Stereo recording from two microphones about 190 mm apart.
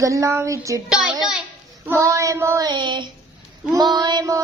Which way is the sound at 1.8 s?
15° right (ahead or behind).